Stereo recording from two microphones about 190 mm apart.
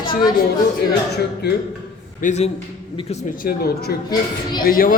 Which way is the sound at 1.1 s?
60° left (ahead or behind).